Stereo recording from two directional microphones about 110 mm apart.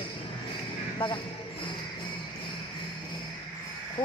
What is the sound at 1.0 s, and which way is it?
Speech, 55° left (ahead or behind).